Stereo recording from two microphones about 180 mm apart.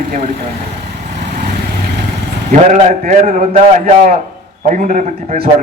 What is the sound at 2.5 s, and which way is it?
Speech, 40° right (ahead or behind).